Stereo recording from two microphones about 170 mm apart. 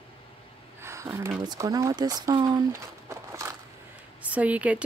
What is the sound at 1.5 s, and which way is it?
Speech, 20° right (ahead or behind).